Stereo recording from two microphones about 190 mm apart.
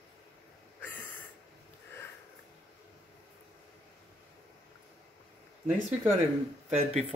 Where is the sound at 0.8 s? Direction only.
10° left (ahead or behind).